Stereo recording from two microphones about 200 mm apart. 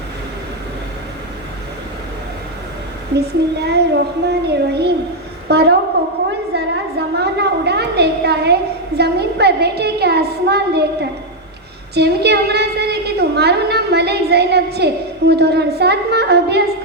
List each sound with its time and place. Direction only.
3.2 s a woman's voice: 55° right (ahead or behind)